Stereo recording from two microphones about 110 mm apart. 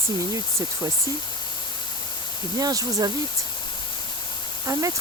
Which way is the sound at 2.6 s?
35° right (ahead or behind).